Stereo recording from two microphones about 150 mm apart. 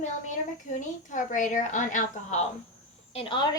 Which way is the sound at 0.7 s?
55° left (ahead or behind).